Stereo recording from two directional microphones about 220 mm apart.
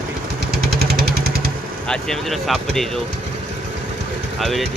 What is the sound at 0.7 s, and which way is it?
Vehicle, 45° right (ahead or behind).